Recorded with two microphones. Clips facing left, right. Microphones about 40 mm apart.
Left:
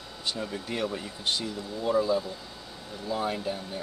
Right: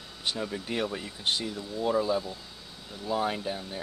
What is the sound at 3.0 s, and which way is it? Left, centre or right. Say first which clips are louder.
Speech: right 1 dB; centre.